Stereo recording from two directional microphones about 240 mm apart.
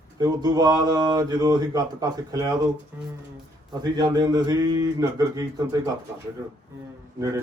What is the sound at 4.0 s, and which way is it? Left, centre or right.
Speech, centre.